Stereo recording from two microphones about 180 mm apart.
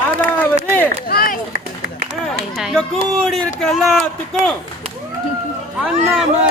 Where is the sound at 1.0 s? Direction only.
55° left (ahead or behind).